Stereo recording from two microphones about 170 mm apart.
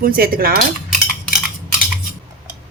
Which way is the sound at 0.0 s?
60° right (ahead or behind).